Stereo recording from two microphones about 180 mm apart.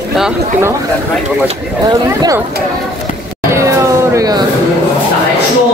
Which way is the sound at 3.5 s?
15° right (ahead or behind).